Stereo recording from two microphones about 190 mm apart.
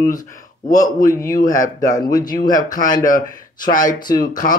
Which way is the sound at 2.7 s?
45° left (ahead or behind).